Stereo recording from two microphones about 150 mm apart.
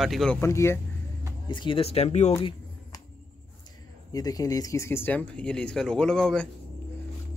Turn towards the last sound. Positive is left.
turn(degrees=5)  # may be behind; listen again after turning